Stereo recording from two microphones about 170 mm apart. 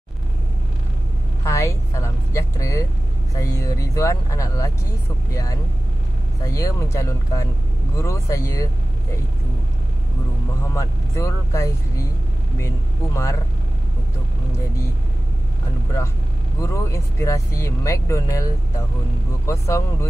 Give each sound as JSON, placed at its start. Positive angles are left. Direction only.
{"t": 1.4, "sound": "speech", "side_deg": 15}
{"t": 10.7, "sound": "speech", "side_deg": 20}
{"t": 16.6, "sound": "speech", "side_deg": 15}